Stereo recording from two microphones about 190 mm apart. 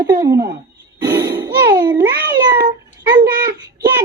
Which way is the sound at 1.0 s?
15° right (ahead or behind).